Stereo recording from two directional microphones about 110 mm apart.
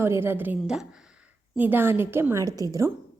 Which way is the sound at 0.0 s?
20° right (ahead or behind).